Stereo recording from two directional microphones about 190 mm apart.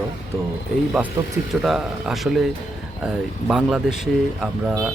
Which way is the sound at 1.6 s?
Centre (ahead or behind).